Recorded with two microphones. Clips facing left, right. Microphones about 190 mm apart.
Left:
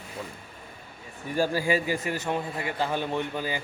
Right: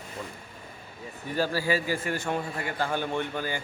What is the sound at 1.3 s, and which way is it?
Speech, 15° left (ahead or behind).